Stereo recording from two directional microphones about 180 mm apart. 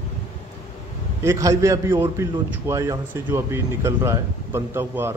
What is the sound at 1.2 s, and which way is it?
A man's voice, 15° right (ahead or behind).